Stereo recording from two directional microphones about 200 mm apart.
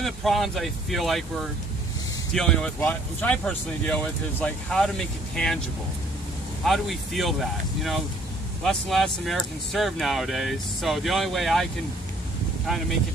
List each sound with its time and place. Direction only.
0.0 s speech: centre (ahead or behind)
6.6 s speech: centre (ahead or behind)